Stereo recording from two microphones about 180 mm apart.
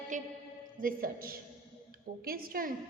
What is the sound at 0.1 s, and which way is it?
A woman's voice, 40° right (ahead or behind).